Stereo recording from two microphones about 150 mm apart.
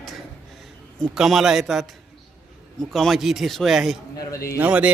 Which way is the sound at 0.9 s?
Centre (ahead or behind).